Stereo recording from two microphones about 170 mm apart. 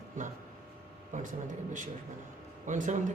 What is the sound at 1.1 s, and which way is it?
Speech, 50° right (ahead or behind).